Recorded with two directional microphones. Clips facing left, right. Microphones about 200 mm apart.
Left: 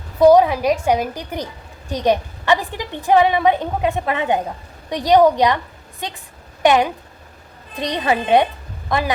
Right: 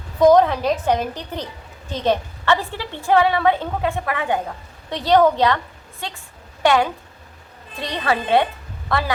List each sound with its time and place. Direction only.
0.2 s a woman's voice: 10° left (ahead or behind)